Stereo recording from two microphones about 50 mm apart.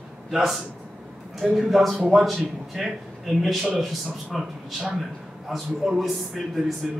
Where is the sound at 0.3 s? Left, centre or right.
Centre.